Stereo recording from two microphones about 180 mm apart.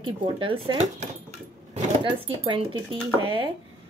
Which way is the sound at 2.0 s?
30° right (ahead or behind).